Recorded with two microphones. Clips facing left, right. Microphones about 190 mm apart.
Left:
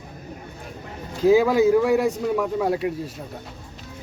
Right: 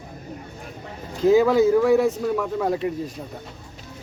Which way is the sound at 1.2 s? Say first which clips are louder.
Even; 10° left (ahead or behind).